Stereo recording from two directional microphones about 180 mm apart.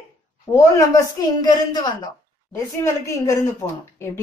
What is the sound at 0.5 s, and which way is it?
A woman's voice, 20° left (ahead or behind).